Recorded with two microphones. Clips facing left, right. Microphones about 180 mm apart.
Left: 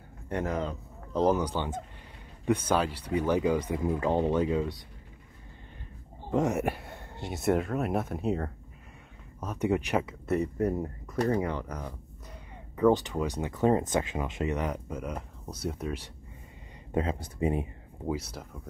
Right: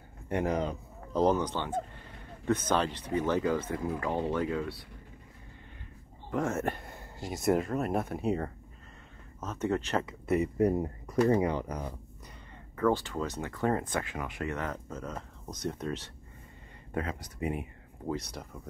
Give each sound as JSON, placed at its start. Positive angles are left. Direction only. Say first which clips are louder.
{"t": 1.1, "sound": "speech", "louder": "left 1 dB", "side_deg": 5}
{"t": 6.3, "sound": "speech", "louder": "left 4 dB", "side_deg": 15}
{"t": 9.4, "sound": "speech", "louder": "left 3 dB", "side_deg": 10}
{"t": 10.3, "sound": "speech", "louder": "right 1 dB", "side_deg": -5}
{"t": 10.7, "sound": "speech", "louder": "right 1 dB", "side_deg": -20}
{"t": 12.7, "sound": "speech", "louder": "left 4 dB", "side_deg": 20}
{"t": 16.9, "sound": "speech", "louder": "left 5 dB", "side_deg": 25}
{"t": 18.0, "sound": "speech", "louder": "left 2 dB", "side_deg": 5}